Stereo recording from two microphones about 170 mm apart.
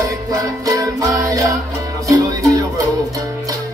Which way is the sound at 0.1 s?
20° right (ahead or behind).